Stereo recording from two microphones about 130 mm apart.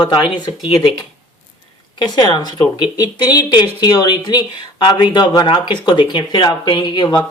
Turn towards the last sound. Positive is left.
turn(degrees=35)  # may be behind; listen again after turning